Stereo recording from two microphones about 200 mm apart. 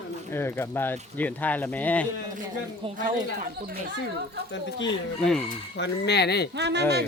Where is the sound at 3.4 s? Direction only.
50° right (ahead or behind).